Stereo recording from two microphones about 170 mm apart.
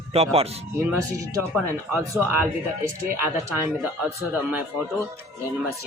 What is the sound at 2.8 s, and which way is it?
A man's voice, 15° right (ahead or behind).